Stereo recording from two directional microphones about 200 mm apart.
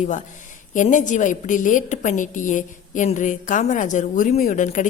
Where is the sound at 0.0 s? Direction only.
40° left (ahead or behind).